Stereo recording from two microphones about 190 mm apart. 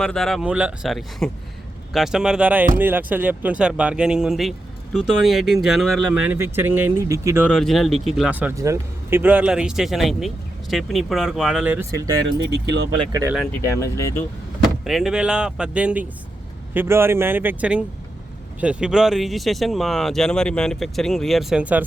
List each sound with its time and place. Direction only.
0.0 s speech: centre (ahead or behind); by 7.4 s 15° right (ahead or behind)
7.4 s speech: centre (ahead or behind); by 12.2 s 20° right (ahead or behind)
13.6 s speech: 15° left (ahead or behind)
14.8 s speech: centre (ahead or behind)